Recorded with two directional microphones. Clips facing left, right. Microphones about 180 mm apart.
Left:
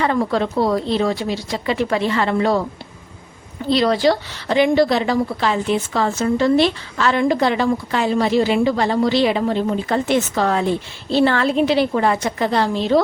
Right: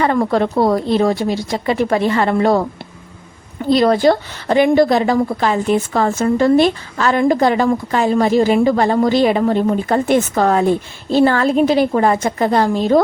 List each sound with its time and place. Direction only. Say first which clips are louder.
0.0 s a woman's voice: right 3 dB; 50° right (ahead or behind)
3.7 s a woman's voice: right 4 dB; 50° right (ahead or behind)